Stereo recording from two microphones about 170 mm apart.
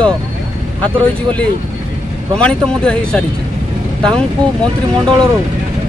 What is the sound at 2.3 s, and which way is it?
Speech, 5° left (ahead or behind).